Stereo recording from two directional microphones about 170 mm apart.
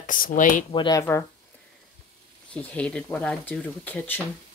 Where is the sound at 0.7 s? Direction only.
25° left (ahead or behind).